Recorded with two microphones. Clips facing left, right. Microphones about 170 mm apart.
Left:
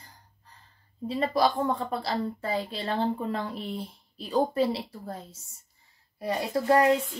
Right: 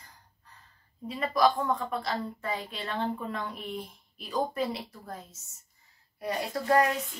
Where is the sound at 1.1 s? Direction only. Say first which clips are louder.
Left 1 dB; 30° left (ahead or behind).